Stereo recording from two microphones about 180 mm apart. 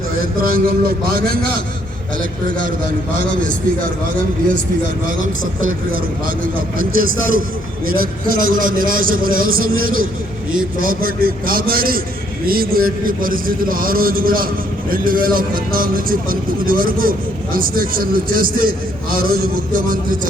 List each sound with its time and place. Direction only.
0.4 s a man's voice: 55° right (ahead or behind)
5.9 s a man's voice: 50° right (ahead or behind)